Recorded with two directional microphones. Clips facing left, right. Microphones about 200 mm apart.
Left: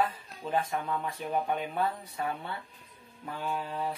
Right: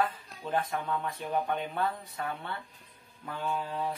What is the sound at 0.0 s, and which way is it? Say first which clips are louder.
Speech: left 1 dB; 5° left (ahead or behind).